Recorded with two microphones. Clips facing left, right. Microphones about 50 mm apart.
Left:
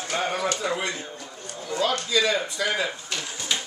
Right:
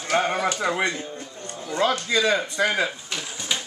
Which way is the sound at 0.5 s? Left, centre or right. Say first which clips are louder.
Right 4 dB; right.